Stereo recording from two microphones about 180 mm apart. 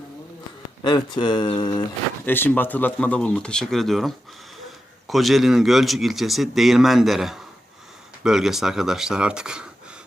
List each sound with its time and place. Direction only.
0.9 s speech: 25° left (ahead or behind)
2.2 s speech: 10° left (ahead or behind); by 9.6 s 5° right (ahead or behind)